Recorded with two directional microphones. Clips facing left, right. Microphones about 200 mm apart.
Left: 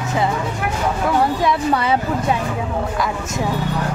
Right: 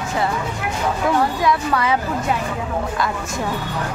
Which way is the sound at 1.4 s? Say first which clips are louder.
Left 1 dB; 30° left (ahead or behind).